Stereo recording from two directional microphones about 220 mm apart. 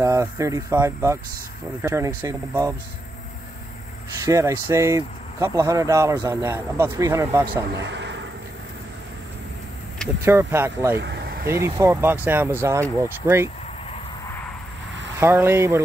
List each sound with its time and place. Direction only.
0.0 s speech: 15° right (ahead or behind)
4.2 s speech: 15° right (ahead or behind)
7.7 s vehicle: 50° right (ahead or behind)
10.2 s speech: 10° right (ahead or behind)
11.0 s vehicle: 50° right (ahead or behind)
11.4 s speech: 15° right (ahead or behind)
15.1 s speech: 10° right (ahead or behind)